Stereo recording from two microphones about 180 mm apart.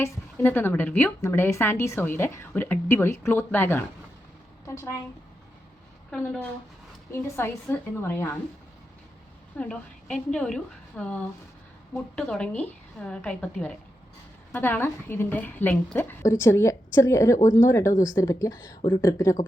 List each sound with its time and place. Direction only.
0.0 s a woman's voice: 10° left (ahead or behind)
7.1 s a woman's voice: 15° left (ahead or behind)
9.6 s a woman's voice: 5° left (ahead or behind)